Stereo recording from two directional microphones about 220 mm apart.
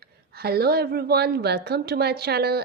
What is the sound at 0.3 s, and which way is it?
A woman's voice, 45° right (ahead or behind).